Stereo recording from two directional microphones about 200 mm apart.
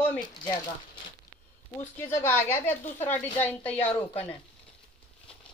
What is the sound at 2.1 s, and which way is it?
A woman's voice, 10° left (ahead or behind).